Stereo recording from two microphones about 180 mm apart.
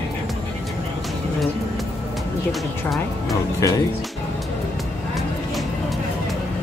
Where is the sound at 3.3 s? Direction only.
20° left (ahead or behind).